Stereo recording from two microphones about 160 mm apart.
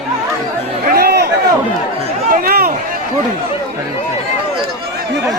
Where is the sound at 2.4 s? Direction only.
75° right (ahead or behind).